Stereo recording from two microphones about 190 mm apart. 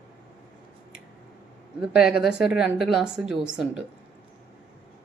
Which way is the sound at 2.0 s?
5° right (ahead or behind).